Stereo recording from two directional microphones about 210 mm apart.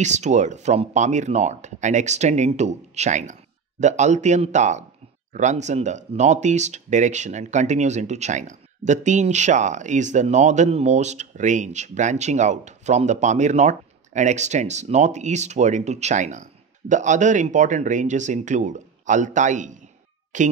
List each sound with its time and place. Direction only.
0.0 s speech: 35° right (ahead or behind)